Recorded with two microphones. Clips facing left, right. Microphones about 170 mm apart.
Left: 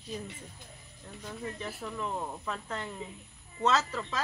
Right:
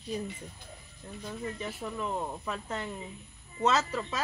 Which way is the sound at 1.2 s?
Centre (ahead or behind).